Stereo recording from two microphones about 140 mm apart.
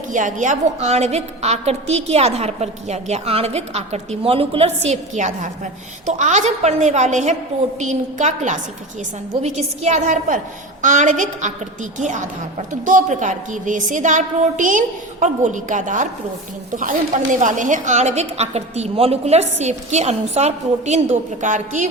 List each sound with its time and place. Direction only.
0.1 s a woman's voice: 65° right (ahead or behind)
17.4 s a woman's voice: 65° right (ahead or behind)